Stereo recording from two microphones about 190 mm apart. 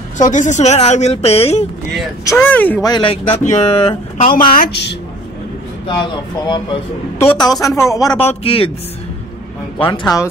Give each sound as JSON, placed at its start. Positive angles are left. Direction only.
{"t": 0.2, "sound": "speech", "side_deg": 40}
{"t": 2.2, "sound": "speech", "side_deg": 10}
{"t": 2.9, "sound": "speech", "side_deg": 30}
{"t": 4.4, "sound": "speech", "side_deg": 50}
{"t": 6.4, "sound": "a man's voice", "side_deg": 25}
{"t": 7.6, "sound": "speech", "side_deg": 15}
{"t": 8.2, "sound": "a man's voice", "side_deg": 30}
{"t": 9.8, "sound": "a man's voice", "side_deg": 25}